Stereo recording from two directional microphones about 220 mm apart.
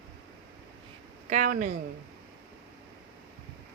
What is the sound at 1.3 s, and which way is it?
Speech, 35° right (ahead or behind).